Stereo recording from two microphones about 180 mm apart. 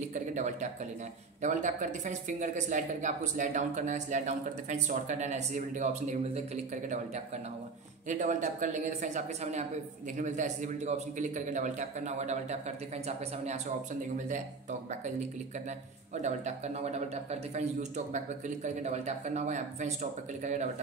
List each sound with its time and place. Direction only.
0.1 s speech: 40° right (ahead or behind)
8.1 s speech: 45° right (ahead or behind)
14.1 s speech: 45° right (ahead or behind)
16.2 s speech: 40° right (ahead or behind)